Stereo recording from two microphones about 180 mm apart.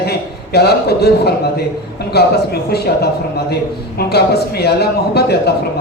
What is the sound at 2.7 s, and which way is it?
A man's voice, 65° left (ahead or behind).